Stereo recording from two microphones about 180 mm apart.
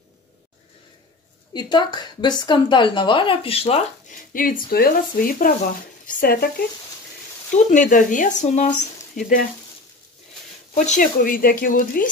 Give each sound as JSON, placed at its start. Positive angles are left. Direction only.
{"t": 1.5, "sound": "a woman's voice", "side_deg": 25}
{"t": 4.1, "sound": "speech", "side_deg": 50}
{"t": 7.5, "sound": "speech", "side_deg": 45}
{"t": 10.9, "sound": "speech", "side_deg": 50}